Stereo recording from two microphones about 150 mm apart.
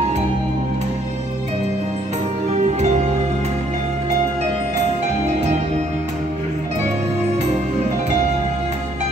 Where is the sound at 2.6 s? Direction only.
50° right (ahead or behind).